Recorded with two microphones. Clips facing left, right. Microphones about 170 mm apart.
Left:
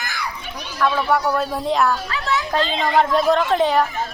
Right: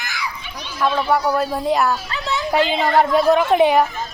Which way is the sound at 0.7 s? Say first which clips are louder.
Even; 15° right (ahead or behind).